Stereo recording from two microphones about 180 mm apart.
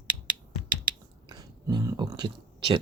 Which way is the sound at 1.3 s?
20° right (ahead or behind).